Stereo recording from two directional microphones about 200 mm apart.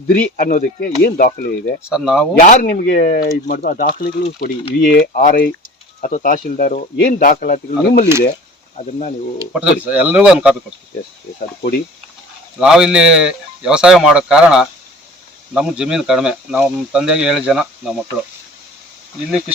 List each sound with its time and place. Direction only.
0.1 s speech: 45° left (ahead or behind)
1.8 s speech: 5° right (ahead or behind)
2.4 s speech: 40° left (ahead or behind)
9.5 s speech: 5° right (ahead or behind)
12.5 s speech: 5° right (ahead or behind)
19.3 s speech: 5° right (ahead or behind)